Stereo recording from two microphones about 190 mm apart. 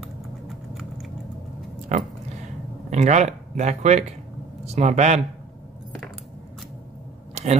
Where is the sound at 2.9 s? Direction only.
35° right (ahead or behind).